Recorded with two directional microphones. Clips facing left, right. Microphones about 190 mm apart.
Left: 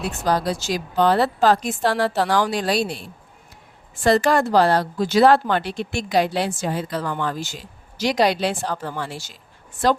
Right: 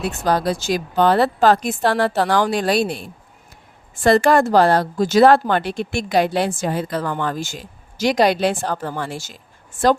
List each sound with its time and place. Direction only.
0.3 s a woman's voice: 55° right (ahead or behind)
4.0 s speech: 55° right (ahead or behind)